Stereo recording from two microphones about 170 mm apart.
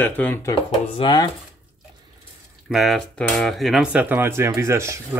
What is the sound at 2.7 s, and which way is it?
Speech, centre (ahead or behind).